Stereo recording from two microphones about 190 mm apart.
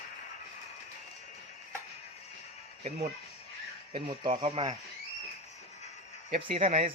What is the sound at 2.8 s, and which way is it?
Speech, 30° right (ahead or behind).